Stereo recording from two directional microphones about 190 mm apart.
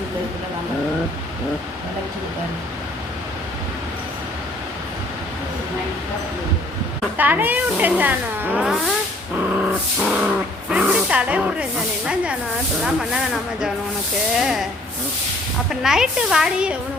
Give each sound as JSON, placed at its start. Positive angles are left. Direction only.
{"t": 7.2, "sound": "speech", "side_deg": -10}
{"t": 9.3, "sound": "dog", "side_deg": -5}
{"t": 10.7, "sound": "a sound", "side_deg": -5}
{"t": 12.0, "sound": "speech", "side_deg": -5}
{"t": 15.7, "sound": "speech", "side_deg": -5}